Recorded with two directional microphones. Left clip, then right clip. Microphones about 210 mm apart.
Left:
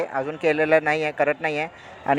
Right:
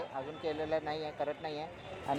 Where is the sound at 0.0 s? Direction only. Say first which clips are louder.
Left 15 dB; 35° left (ahead or behind).